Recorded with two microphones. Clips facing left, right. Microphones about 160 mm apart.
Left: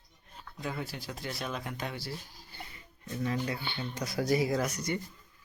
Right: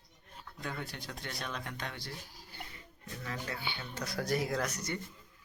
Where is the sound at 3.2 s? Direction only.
20° left (ahead or behind).